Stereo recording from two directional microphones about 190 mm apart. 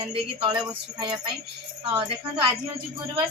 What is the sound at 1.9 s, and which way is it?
Speech, 25° right (ahead or behind).